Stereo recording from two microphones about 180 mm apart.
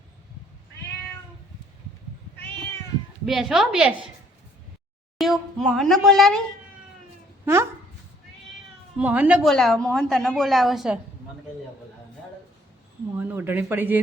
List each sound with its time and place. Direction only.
3.2 s a woman's voice: centre (ahead or behind)
5.1 s a woman's voice: centre (ahead or behind)
7.4 s speech: 15° right (ahead or behind)
9.0 s a man's voice: 10° right (ahead or behind)
9.5 s a woman's voice: centre (ahead or behind)
13.1 s a man's voice: 10° right (ahead or behind)